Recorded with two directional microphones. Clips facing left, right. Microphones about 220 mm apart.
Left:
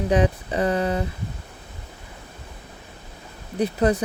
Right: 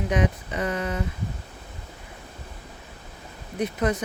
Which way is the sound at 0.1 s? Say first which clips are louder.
Left 5 dB; 35° left (ahead or behind).